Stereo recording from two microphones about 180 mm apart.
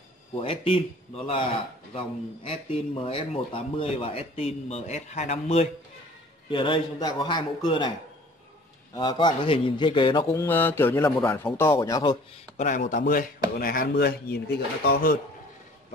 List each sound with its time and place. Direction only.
0.4 s speech: 30° left (ahead or behind)
6.5 s a man's voice: 25° left (ahead or behind)
8.9 s a man's voice: 25° left (ahead or behind)
10.2 s a man's voice: 15° left (ahead or behind)
12.5 s speech: 45° left (ahead or behind)